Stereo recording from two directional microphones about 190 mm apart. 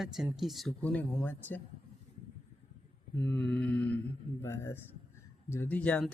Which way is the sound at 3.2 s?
5° left (ahead or behind).